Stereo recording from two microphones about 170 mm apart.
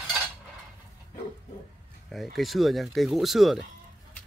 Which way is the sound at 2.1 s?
Centre (ahead or behind).